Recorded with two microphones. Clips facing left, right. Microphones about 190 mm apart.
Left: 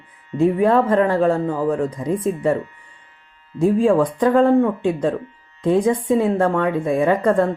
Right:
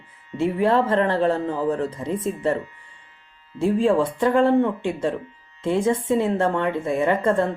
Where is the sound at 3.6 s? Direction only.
15° left (ahead or behind).